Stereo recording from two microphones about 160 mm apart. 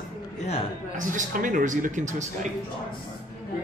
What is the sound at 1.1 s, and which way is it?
A woman's voice, 55° right (ahead or behind).